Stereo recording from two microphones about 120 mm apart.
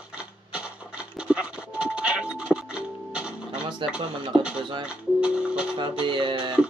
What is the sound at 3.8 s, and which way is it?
Music, 45° right (ahead or behind).